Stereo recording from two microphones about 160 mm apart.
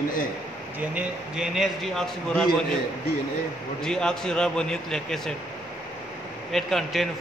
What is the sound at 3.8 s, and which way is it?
A man's voice, 5° left (ahead or behind).